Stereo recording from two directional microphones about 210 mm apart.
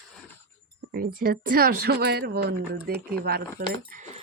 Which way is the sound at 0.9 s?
45° right (ahead or behind).